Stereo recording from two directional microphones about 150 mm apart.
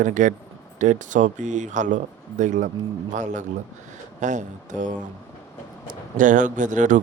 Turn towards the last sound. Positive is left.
turn(degrees=-55)  # may be behind; listen again after turning